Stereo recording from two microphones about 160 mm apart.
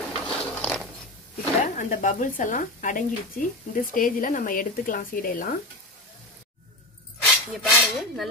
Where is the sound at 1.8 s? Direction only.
55° left (ahead or behind).